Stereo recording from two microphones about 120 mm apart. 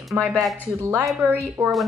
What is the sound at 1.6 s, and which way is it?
Speech, 25° right (ahead or behind).